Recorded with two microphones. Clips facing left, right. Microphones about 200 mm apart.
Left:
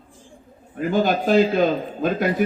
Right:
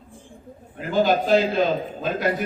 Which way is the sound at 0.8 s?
50° left (ahead or behind).